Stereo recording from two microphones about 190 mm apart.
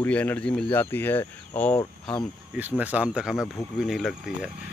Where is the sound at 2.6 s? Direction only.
10° right (ahead or behind).